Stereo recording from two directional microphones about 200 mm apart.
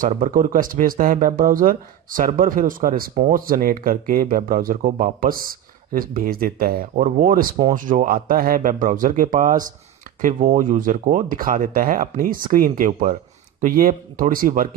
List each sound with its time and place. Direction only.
0.0 s speech: 40° right (ahead or behind)